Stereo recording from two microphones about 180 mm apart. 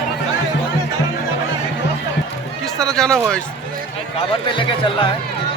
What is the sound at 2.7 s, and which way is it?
Speech, 5° left (ahead or behind).